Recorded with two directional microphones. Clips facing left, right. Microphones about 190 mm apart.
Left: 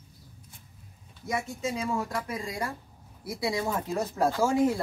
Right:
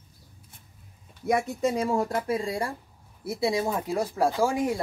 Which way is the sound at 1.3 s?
55° right (ahead or behind).